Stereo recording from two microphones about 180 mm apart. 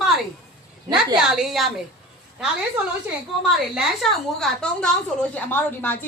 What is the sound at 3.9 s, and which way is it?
A woman's voice, centre (ahead or behind).